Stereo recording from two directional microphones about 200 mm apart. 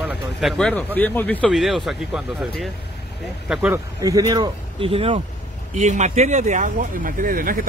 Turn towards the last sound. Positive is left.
turn(degrees=-45)  # may be behind; listen again after turning